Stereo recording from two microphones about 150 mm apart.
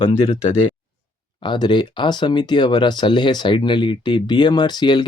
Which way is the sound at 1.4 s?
30° left (ahead or behind).